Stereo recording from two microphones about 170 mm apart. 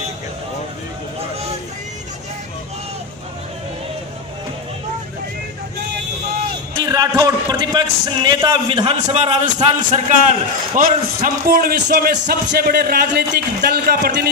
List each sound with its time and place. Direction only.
6.8 s a man's voice: 20° right (ahead or behind); by 14.2 s 65° right (ahead or behind)